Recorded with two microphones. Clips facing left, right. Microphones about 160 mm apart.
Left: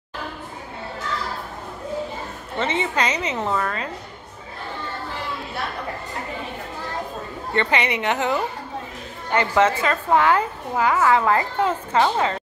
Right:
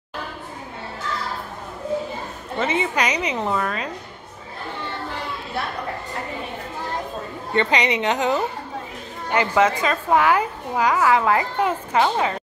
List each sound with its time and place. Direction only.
2.6 s a woman's voice: 10° right (ahead or behind)
7.5 s a woman's voice: 20° right (ahead or behind)